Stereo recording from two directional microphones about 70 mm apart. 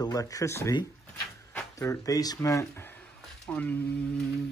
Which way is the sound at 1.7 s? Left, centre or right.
Left.